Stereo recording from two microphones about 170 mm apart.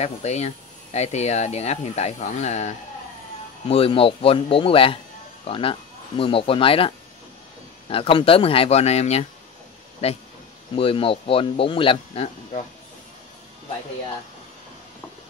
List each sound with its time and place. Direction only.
0.0 s speech: 40° left (ahead or behind)
7.9 s speech: 30° left (ahead or behind)
10.8 s speech: 35° left (ahead or behind)